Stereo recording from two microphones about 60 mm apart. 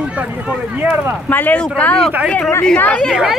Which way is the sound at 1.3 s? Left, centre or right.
Left.